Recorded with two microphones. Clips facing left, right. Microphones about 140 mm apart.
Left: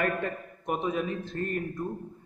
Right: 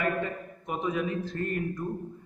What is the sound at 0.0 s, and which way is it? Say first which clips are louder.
Speech: even; 55° left (ahead or behind).